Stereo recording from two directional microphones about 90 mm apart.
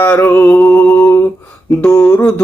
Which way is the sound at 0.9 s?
35° left (ahead or behind).